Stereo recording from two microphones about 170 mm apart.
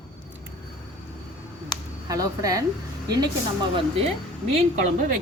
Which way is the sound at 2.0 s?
20° right (ahead or behind).